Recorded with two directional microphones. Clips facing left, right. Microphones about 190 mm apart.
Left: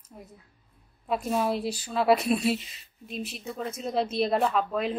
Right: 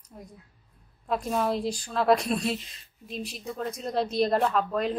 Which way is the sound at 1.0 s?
5° left (ahead or behind).